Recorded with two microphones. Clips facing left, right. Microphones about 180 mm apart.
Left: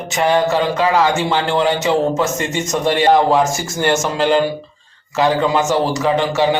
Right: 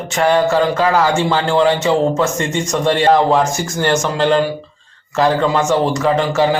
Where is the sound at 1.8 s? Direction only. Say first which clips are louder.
Right 1 dB; 20° left (ahead or behind).